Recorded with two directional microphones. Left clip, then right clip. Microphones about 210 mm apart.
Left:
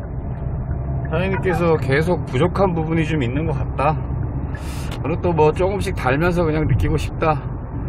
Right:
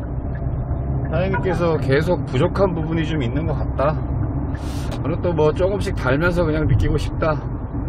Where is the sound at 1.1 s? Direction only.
25° left (ahead or behind).